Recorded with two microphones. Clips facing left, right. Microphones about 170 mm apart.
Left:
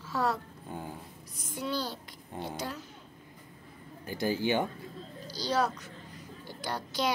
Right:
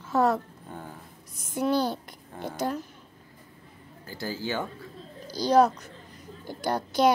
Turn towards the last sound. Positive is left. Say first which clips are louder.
# right 9 dB
turn(degrees=-50)  # may be behind; listen again after turning